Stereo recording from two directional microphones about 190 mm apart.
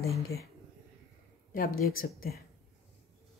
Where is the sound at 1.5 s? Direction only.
50° left (ahead or behind).